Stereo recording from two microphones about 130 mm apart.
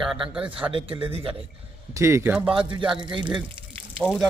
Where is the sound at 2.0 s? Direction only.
20° right (ahead or behind).